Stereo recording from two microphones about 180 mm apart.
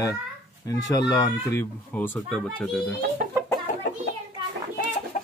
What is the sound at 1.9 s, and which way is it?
Speech, 10° left (ahead or behind).